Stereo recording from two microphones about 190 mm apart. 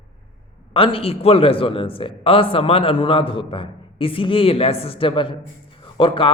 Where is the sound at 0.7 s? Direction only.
30° left (ahead or behind).